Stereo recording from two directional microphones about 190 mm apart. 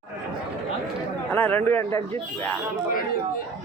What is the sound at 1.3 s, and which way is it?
Speech, 10° left (ahead or behind).